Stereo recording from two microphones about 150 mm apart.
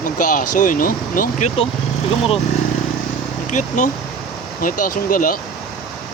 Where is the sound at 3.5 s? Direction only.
55° left (ahead or behind).